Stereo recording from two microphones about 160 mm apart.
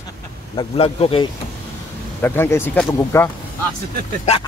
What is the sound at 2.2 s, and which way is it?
Speech, 15° left (ahead or behind).